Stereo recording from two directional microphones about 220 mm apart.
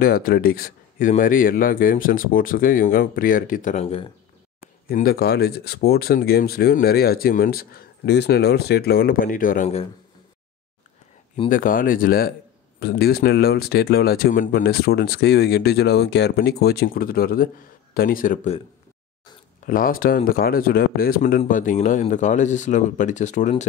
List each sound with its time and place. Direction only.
0.0 s speech: 40° left (ahead or behind)
4.8 s speech: 45° left (ahead or behind)
11.4 s speech: 40° left (ahead or behind)
19.6 s speech: 40° left (ahead or behind)